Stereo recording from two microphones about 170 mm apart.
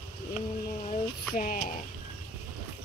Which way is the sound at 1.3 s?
55° left (ahead or behind).